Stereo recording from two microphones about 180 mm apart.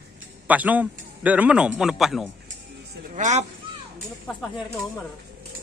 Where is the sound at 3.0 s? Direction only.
45° right (ahead or behind).